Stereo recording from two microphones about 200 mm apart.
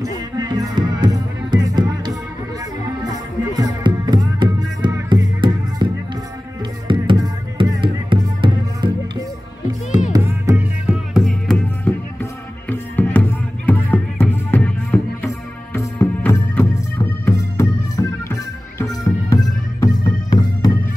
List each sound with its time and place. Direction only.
0.0 s music: 20° right (ahead or behind)
6.9 s music: 25° right (ahead or behind); by 11.2 s 5° right (ahead or behind)
11.2 s music: 5° left (ahead or behind); by 20.7 s 20° left (ahead or behind)